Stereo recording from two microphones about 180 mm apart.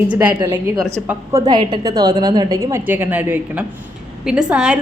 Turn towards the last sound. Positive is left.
turn(degrees=-5)  # may be behind; listen again after turning